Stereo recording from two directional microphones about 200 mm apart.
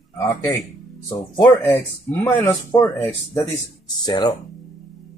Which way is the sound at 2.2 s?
15° left (ahead or behind).